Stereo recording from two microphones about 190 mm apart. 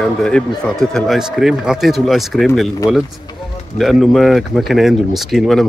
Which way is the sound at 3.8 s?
Centre (ahead or behind).